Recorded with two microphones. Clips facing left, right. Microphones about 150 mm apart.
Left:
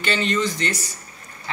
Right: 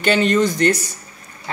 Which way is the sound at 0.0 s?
50° right (ahead or behind).